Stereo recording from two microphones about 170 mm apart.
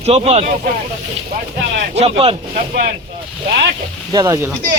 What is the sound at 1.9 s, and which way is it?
Speech, 35° right (ahead or behind).